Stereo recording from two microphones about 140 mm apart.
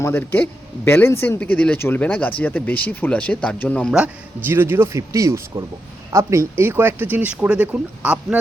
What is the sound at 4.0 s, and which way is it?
Speech, 15° right (ahead or behind).